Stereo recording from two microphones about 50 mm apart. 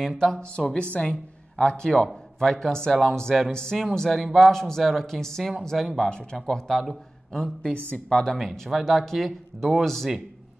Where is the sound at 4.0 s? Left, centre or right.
Centre.